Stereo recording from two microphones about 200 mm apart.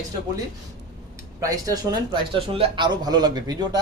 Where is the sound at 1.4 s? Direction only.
20° right (ahead or behind).